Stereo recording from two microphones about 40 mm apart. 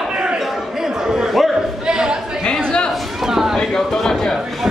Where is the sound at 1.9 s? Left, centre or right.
Centre.